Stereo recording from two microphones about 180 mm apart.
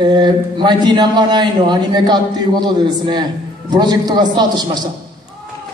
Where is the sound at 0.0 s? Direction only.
25° right (ahead or behind).